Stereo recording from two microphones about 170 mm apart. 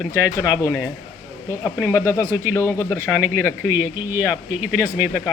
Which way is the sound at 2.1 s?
15° right (ahead or behind).